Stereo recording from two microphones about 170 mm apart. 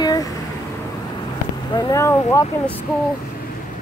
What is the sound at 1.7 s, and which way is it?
Speech, 20° left (ahead or behind).